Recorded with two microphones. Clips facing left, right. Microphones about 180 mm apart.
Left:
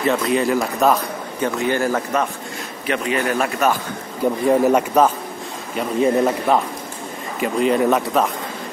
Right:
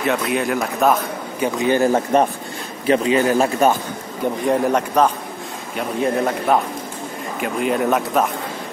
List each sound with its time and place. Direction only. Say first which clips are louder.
0.0 s speech: left 2 dB; centre (ahead or behind)
1.4 s a man's voice: right 3 dB; 15° right (ahead or behind)
4.5 s speech: left 3 dB; 5° left (ahead or behind)